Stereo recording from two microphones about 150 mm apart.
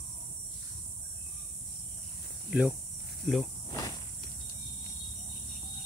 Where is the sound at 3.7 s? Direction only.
25° left (ahead or behind).